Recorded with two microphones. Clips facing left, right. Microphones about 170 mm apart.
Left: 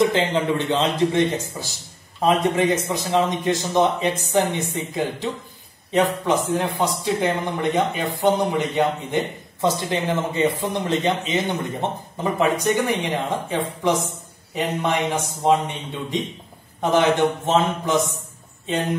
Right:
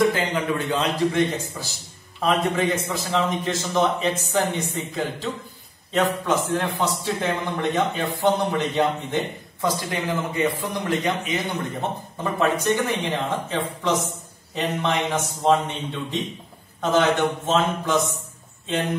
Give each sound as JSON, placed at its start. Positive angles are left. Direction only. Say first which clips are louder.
{"t": 0.1, "sound": "a man's voice", "louder": "left 3 dB", "side_deg": 25}
{"t": 2.9, "sound": "a man's voice", "louder": "left 3 dB", "side_deg": 20}